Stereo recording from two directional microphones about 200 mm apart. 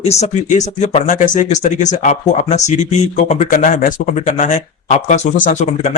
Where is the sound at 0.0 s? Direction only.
35° left (ahead or behind).